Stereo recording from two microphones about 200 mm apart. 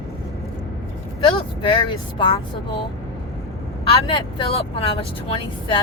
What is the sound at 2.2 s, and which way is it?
Speech, 25° left (ahead or behind).